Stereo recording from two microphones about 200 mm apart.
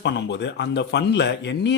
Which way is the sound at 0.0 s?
60° left (ahead or behind).